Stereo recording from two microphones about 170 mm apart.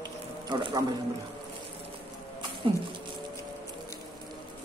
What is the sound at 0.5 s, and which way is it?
Speech, 25° right (ahead or behind).